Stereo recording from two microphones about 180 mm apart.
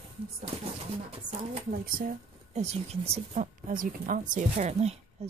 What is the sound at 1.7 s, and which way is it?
Speech, 50° right (ahead or behind).